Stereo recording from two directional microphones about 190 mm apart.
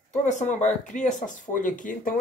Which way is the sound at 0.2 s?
40° left (ahead or behind).